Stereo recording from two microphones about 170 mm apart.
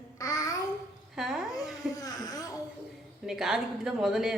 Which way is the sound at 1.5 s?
20° left (ahead or behind).